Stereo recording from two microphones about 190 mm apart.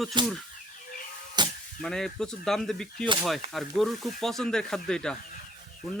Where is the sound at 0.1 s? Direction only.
25° right (ahead or behind).